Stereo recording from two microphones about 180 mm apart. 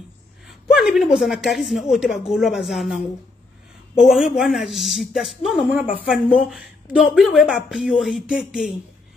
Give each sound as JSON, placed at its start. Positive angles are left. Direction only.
{"t": 0.5, "sound": "speech", "side_deg": 0}